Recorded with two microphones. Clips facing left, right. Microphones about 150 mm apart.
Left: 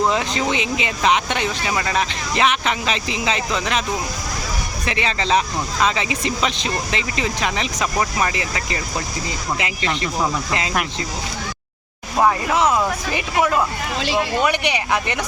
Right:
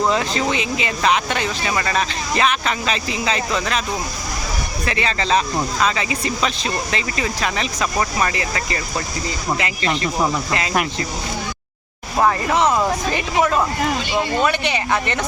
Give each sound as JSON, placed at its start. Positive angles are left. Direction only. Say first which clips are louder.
{"t": 0.1, "sound": "speech", "louder": "right 1 dB", "side_deg": 20}
{"t": 4.9, "sound": "speech", "louder": "even", "side_deg": 20}
{"t": 12.2, "sound": "speech", "louder": "even", "side_deg": 5}
{"t": 14.4, "sound": "speech", "louder": "even", "side_deg": 15}